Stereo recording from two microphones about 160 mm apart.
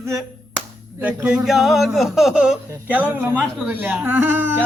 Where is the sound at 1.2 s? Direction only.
5° right (ahead or behind).